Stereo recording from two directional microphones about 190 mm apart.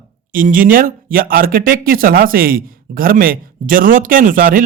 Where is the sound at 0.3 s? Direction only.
45° right (ahead or behind).